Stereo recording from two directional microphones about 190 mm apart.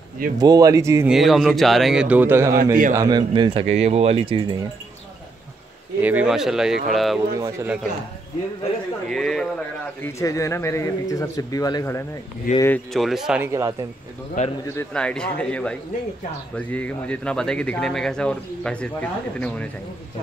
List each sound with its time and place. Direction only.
0.4 s a man's voice: 20° right (ahead or behind)
1.0 s speech: centre (ahead or behind); by 4.6 s 25° right (ahead or behind)
6.0 s speech: 5° right (ahead or behind)
7.3 s a man's voice: 15° right (ahead or behind)
9.1 s speech: 5° left (ahead or behind)
10.0 s speech: 15° left (ahead or behind)
12.9 s speech: centre (ahead or behind)
13.5 s a man's voice: 15° right (ahead or behind)
14.4 s a man's voice: 40° left (ahead or behind)
14.8 s speech: 5° left (ahead or behind)